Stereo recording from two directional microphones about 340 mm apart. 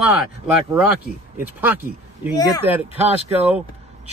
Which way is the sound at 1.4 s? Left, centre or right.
Centre.